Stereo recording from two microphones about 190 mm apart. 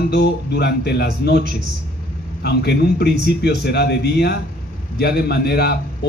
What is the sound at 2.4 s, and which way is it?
A man's voice, 60° left (ahead or behind).